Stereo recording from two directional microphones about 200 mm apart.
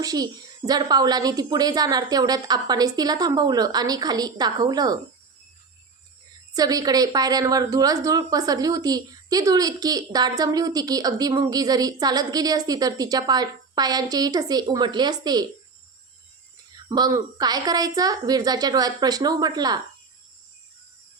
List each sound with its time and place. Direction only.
0.0 s a woman's voice: 20° right (ahead or behind)
6.5 s a woman's voice: 20° right (ahead or behind)
16.9 s a woman's voice: 20° right (ahead or behind)